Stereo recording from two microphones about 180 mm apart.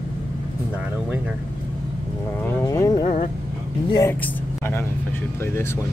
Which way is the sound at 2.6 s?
20° left (ahead or behind).